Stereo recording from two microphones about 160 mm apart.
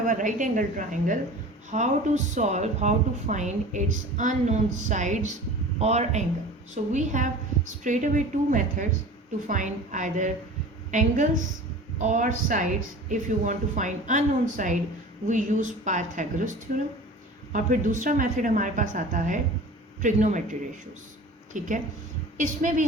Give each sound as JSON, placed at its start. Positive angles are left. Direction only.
{"t": 0.0, "sound": "a woman's voice", "side_deg": -55}